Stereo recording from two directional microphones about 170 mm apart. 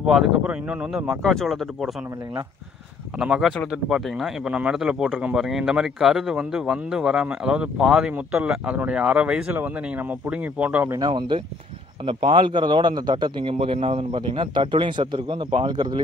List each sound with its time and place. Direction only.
0.0 s speech: 5° right (ahead or behind)
3.2 s speech: 5° right (ahead or behind)
11.0 s a man's voice: 25° right (ahead or behind)